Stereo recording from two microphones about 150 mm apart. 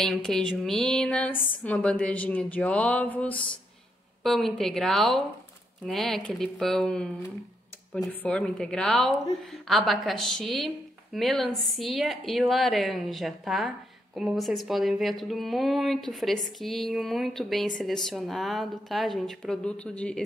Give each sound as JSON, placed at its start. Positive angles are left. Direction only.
{"t": 0.0, "sound": "a woman's voice", "side_deg": 0}